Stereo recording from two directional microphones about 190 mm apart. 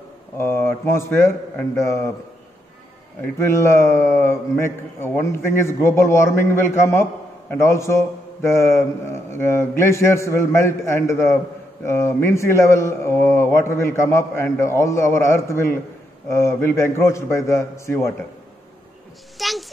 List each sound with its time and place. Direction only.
0.4 s a man's voice: 10° left (ahead or behind)
3.2 s a man's voice: 15° left (ahead or behind)
19.3 s a sound: centre (ahead or behind)